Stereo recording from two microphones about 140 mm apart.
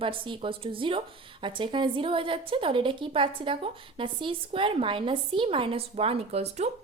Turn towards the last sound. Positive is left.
turn(degrees=-50)  # may be behind; listen again after turning